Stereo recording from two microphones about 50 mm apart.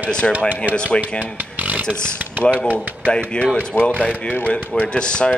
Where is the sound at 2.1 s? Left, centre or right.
Right.